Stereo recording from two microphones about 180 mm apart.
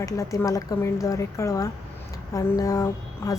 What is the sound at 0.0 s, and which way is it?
A woman's voice, 15° left (ahead or behind).